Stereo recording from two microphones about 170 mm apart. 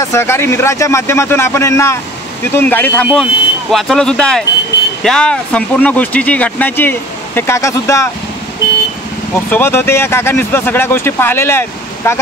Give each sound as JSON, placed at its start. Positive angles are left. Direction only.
{"t": 0.0, "sound": "speech", "side_deg": 15}
{"t": 9.3, "sound": "speech", "side_deg": 15}